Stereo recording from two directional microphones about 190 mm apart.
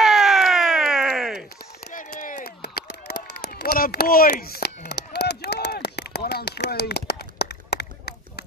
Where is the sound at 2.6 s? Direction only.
60° left (ahead or behind).